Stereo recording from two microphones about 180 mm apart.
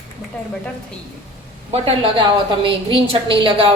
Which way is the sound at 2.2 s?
25° right (ahead or behind).